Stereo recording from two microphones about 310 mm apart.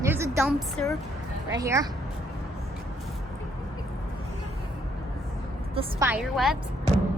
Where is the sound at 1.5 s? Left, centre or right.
Centre.